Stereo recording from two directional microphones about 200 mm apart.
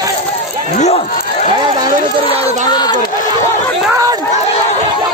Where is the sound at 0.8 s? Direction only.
35° left (ahead or behind).